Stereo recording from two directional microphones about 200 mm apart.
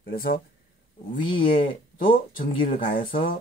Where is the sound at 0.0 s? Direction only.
50° left (ahead or behind).